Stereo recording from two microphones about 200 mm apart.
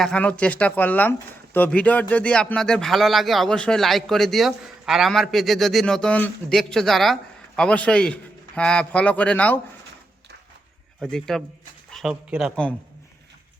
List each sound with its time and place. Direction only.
0.0 s speech: 5° left (ahead or behind)
11.1 s speech: centre (ahead or behind)
11.9 s a sound: centre (ahead or behind)
12.3 s speech: centre (ahead or behind)